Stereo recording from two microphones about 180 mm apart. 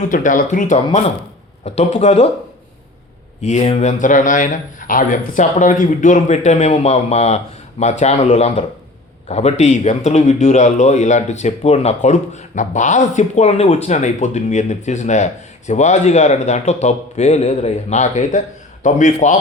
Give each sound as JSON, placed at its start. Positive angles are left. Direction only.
{"t": 0.1, "sound": "speech", "side_deg": 45}
{"t": 3.4, "sound": "speech", "side_deg": 35}